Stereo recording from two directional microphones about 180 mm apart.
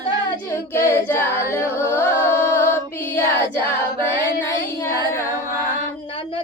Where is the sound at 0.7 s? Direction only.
15° left (ahead or behind).